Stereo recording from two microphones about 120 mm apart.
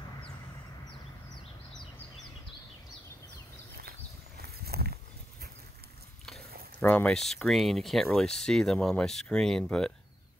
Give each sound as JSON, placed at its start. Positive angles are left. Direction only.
{"t": 6.8, "sound": "speech", "side_deg": 15}
{"t": 7.2, "sound": "speech", "side_deg": 0}